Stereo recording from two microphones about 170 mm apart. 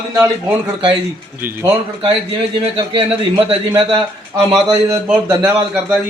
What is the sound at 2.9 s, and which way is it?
A man's voice, 30° right (ahead or behind).